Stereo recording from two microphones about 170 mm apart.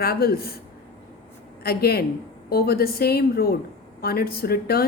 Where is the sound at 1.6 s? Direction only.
65° left (ahead or behind).